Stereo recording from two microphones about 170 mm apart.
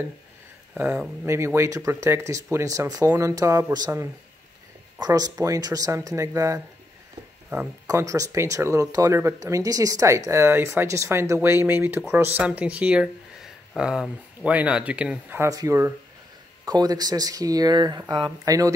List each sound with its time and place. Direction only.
0.7 s speech: 10° right (ahead or behind)
7.8 s speech: 20° right (ahead or behind)